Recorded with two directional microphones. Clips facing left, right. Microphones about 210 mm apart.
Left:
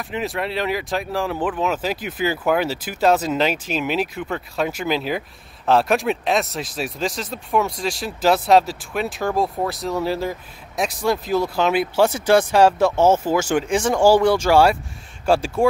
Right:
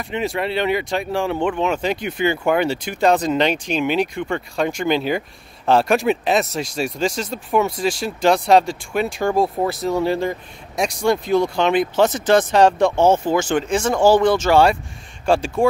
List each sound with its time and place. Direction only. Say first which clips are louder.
0.0 s speech: right 2 dB; centre (ahead or behind)